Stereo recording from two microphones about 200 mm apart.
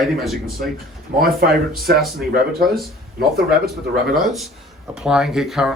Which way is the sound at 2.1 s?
50° right (ahead or behind).